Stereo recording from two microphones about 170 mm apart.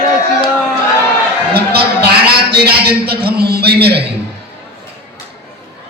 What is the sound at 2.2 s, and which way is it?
A man's voice, 70° right (ahead or behind).